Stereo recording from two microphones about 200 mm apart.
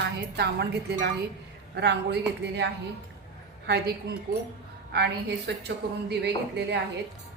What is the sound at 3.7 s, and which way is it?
Speech, 55° right (ahead or behind).